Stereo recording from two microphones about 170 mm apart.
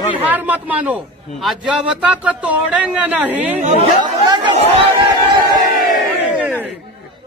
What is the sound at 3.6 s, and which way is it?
Speech, 45° right (ahead or behind).